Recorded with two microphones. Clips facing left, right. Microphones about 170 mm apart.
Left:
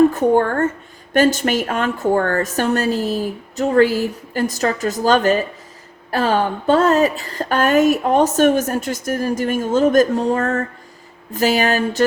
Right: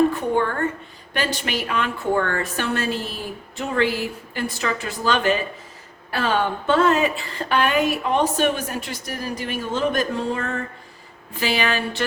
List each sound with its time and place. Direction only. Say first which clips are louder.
0.1 s a woman's voice: left 6 dB; 45° left (ahead or behind)